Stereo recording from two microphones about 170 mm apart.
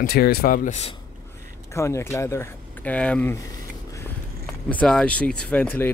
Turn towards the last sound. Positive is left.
turn(degrees=10)  # may be behind; listen again after turning